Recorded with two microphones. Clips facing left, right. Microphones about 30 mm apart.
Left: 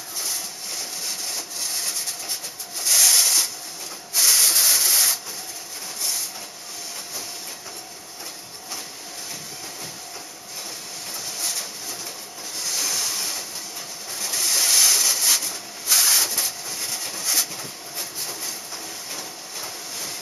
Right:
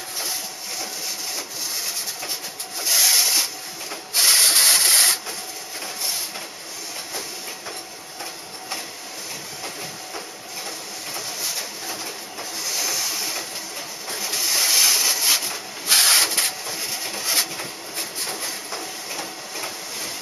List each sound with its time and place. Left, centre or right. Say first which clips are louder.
1.3 s rub: right 1 dB; centre
4.1 s printer: right 2 dB; right
12.6 s a sound: even; centre
15.9 s train: right 3 dB; right
16.8 s a sound: even; centre
17.1 s vehicle: right 2 dB; right
17.4 s printer: right 3 dB; right